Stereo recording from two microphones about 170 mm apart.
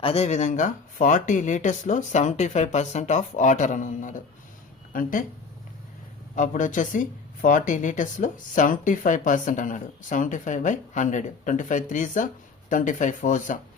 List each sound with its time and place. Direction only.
0.0 s speech: 35° left (ahead or behind); by 5.2 s 55° left (ahead or behind)
6.3 s speech: 50° left (ahead or behind)